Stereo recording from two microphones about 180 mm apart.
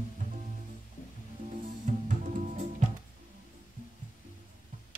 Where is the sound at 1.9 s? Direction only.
45° right (ahead or behind).